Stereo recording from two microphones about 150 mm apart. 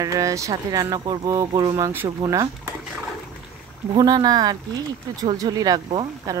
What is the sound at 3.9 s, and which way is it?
Speech, 25° right (ahead or behind).